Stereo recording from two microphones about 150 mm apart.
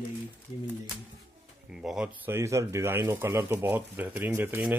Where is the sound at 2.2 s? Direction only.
20° right (ahead or behind).